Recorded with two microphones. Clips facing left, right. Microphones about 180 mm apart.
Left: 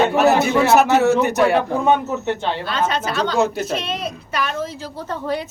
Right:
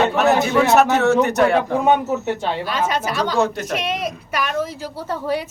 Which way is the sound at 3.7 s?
10° right (ahead or behind).